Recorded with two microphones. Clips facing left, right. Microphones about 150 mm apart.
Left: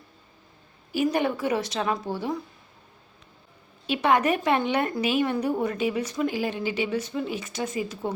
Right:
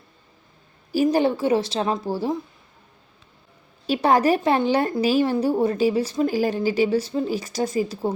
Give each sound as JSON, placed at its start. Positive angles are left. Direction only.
{"t": 0.9, "sound": "speech", "side_deg": -35}
{"t": 3.8, "sound": "speech", "side_deg": -35}